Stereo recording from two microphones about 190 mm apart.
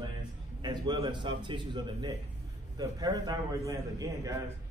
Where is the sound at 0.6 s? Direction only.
25° right (ahead or behind).